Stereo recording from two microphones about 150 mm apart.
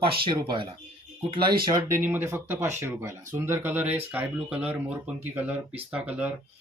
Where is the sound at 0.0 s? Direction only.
35° right (ahead or behind).